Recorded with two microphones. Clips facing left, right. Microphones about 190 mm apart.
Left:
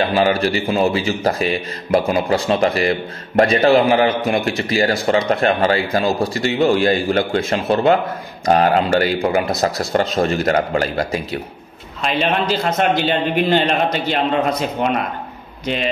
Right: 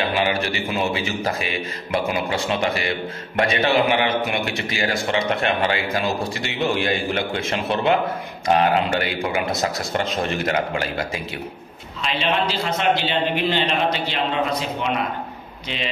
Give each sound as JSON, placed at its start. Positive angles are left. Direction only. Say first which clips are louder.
{"t": 0.1, "sound": "a man's voice", "louder": "left 6 dB", "side_deg": 35}